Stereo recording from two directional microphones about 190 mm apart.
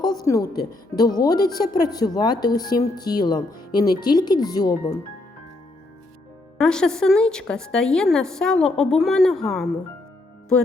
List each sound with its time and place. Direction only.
0.0 s a woman's voice: 20° left (ahead or behind)
6.6 s a woman's voice: 5° left (ahead or behind)